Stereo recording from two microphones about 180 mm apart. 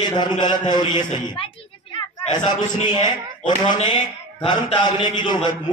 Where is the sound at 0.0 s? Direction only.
25° left (ahead or behind).